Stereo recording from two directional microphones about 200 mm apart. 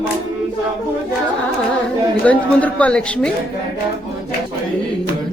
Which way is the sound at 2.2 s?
5° left (ahead or behind).